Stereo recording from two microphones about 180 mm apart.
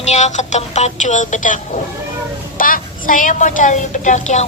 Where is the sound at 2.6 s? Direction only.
50° left (ahead or behind).